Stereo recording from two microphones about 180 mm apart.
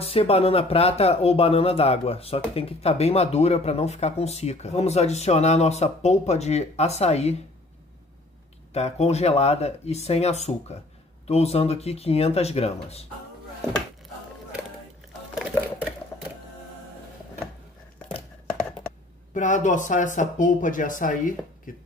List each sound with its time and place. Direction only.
0.0 s speech: 35° left (ahead or behind)
8.7 s speech: 35° left (ahead or behind)
15.3 s a sound: 5° right (ahead or behind)
19.3 s speech: 45° left (ahead or behind)